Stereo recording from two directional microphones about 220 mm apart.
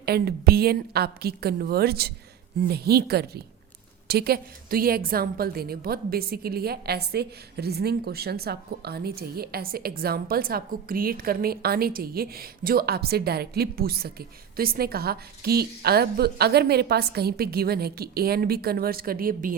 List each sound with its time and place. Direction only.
0.0 s a woman's voice: 45° right (ahead or behind)